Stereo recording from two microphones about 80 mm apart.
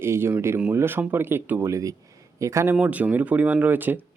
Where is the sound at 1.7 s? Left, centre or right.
Right.